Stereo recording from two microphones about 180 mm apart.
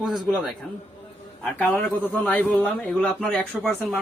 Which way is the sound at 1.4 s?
5° left (ahead or behind).